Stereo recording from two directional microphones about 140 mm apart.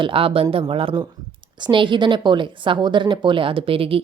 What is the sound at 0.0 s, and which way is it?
Speech, 40° right (ahead or behind).